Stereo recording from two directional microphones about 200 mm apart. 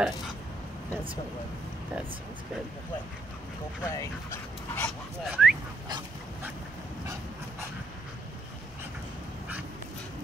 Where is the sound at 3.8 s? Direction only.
15° left (ahead or behind).